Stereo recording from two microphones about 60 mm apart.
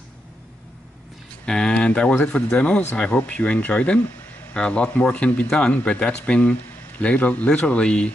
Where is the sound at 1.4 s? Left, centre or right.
Centre.